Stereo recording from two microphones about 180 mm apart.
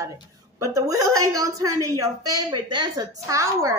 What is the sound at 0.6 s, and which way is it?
Speech, 20° right (ahead or behind).